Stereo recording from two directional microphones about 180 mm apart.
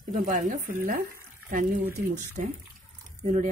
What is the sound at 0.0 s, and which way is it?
Speech, 50° right (ahead or behind).